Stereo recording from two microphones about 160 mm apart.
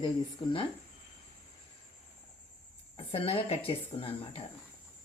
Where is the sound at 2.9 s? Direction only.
35° left (ahead or behind).